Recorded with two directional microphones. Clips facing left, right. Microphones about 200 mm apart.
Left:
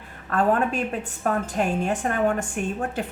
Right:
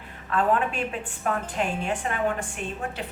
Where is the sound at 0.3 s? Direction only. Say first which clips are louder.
Left 2 dB; 45° left (ahead or behind).